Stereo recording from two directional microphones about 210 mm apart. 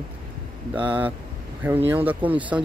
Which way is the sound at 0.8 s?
5° right (ahead or behind).